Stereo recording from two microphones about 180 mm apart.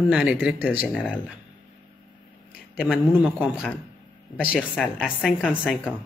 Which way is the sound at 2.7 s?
5° right (ahead or behind).